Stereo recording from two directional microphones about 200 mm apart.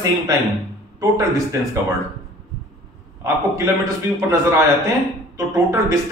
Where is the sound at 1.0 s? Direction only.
15° right (ahead or behind).